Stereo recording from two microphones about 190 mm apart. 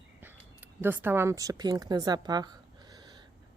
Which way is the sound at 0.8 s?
10° right (ahead or behind).